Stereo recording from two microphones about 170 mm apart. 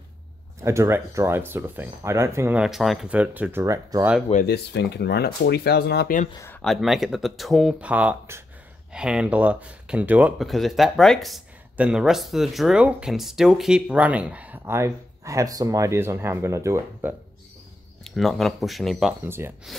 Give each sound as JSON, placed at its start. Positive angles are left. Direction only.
{"t": 0.6, "sound": "speech", "side_deg": -15}
{"t": 4.5, "sound": "speech", "side_deg": 75}
{"t": 6.3, "sound": "speech", "side_deg": 15}
{"t": 6.6, "sound": "speech", "side_deg": 0}
{"t": 18.0, "sound": "speech", "side_deg": 0}
{"t": 19.2, "sound": "speech", "side_deg": -15}